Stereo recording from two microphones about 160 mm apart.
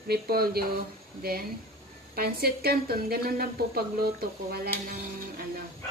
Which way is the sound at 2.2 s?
75° right (ahead or behind).